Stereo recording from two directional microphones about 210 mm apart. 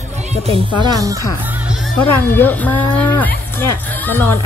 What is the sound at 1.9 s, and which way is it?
Speech, 10° left (ahead or behind).